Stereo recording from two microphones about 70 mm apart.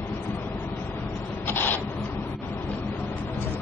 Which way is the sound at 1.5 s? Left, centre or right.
Left.